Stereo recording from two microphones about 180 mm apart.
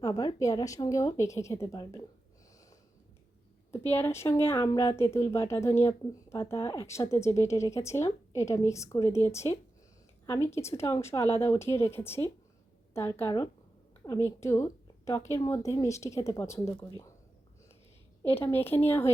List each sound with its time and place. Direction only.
0.0 s a woman's voice: 20° left (ahead or behind)
3.7 s a woman's voice: 15° left (ahead or behind)
18.2 s a woman's voice: 10° left (ahead or behind)